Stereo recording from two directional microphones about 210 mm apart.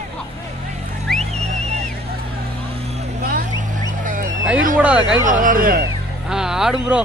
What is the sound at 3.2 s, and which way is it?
Vehicle, 45° right (ahead or behind).